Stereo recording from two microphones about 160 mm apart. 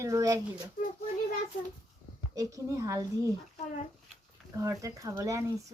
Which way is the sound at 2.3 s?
20° right (ahead or behind).